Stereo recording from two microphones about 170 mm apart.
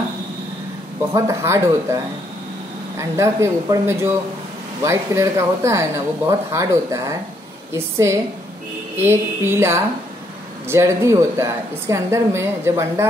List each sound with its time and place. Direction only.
1.1 s speech: 15° right (ahead or behind)
3.0 s speech: 15° right (ahead or behind)